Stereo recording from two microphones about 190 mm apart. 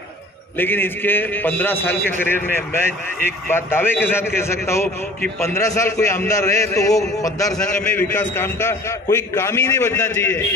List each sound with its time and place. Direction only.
0.6 s a man's voice: 10° left (ahead or behind)
7.5 s a man's voice: 5° left (ahead or behind)